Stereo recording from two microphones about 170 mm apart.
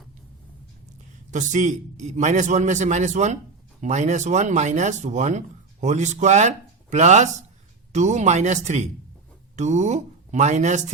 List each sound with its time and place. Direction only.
1.3 s a man's voice: 45° right (ahead or behind)